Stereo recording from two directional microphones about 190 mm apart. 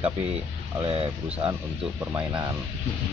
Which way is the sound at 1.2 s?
5° right (ahead or behind).